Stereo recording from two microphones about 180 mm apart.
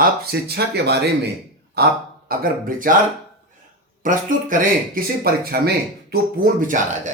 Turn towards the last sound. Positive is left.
turn(degrees=-45)  # may be behind; listen again after turning